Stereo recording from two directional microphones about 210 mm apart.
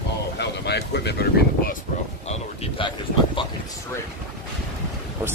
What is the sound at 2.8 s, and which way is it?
Speech, 25° left (ahead or behind).